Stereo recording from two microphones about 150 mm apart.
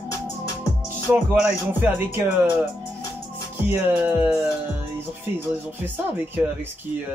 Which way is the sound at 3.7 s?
10° right (ahead or behind).